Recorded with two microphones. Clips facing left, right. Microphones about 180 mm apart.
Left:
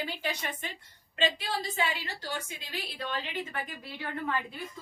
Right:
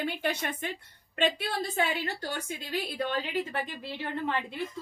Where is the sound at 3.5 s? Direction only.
25° right (ahead or behind).